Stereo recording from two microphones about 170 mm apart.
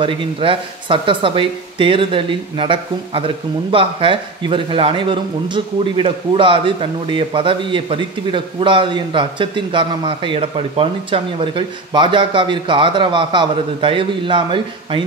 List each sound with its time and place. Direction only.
0.0 s a man's voice: 30° right (ahead or behind)